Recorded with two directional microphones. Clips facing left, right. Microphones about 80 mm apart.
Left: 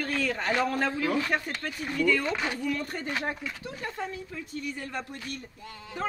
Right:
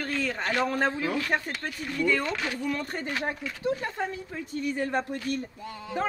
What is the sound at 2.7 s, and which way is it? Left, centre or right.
Speech, right.